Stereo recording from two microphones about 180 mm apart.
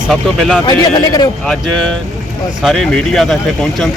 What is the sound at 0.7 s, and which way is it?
Speech, 20° left (ahead or behind).